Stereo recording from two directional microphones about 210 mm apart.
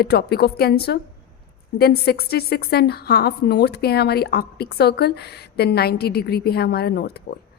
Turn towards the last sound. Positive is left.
turn(degrees=50)  # may be behind; listen again after turning